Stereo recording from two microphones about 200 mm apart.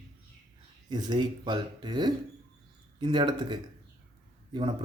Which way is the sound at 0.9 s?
20° right (ahead or behind).